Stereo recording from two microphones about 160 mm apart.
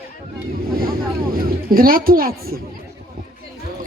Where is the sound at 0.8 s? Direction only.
65° right (ahead or behind).